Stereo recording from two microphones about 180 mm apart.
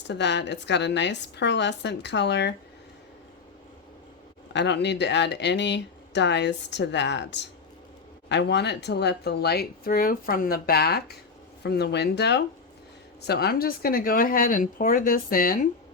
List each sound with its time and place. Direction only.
0.1 s speech: 75° left (ahead or behind)
4.5 s speech: 70° left (ahead or behind); by 15.7 s 50° left (ahead or behind)